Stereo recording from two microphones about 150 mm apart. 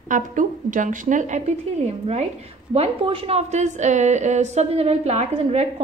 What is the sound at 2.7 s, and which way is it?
A woman's voice, 40° right (ahead or behind).